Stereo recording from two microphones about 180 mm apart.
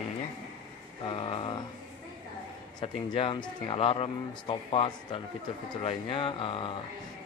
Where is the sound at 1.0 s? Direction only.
30° left (ahead or behind).